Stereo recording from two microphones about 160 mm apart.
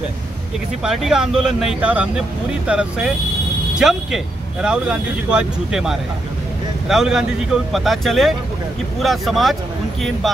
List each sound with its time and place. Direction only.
0.8 s speech: centre (ahead or behind)